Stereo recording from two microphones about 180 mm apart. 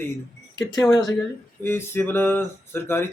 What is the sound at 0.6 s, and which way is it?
Speech, 20° left (ahead or behind).